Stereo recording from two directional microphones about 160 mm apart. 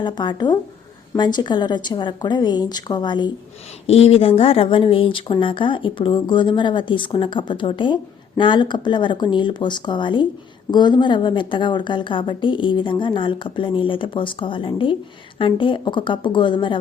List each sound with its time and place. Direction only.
0.0 s a woman's voice: 30° left (ahead or behind)